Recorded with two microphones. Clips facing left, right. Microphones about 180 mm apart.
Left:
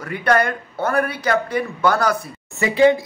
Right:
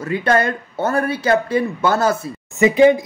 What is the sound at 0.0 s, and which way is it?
Speech, 25° right (ahead or behind).